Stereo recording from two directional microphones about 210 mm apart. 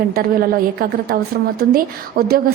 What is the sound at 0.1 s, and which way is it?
A woman's voice, 45° right (ahead or behind).